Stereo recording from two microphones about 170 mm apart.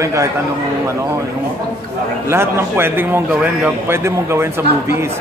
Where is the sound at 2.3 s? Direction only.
15° right (ahead or behind).